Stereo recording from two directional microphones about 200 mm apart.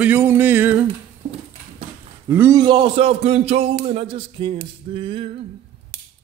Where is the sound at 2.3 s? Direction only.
10° right (ahead or behind).